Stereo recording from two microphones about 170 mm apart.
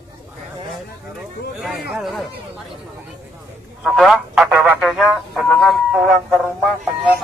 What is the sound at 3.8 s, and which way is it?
Speech, centre (ahead or behind).